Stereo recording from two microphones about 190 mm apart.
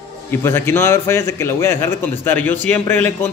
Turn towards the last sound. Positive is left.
turn(degrees=10)  # may be behind; listen again after turning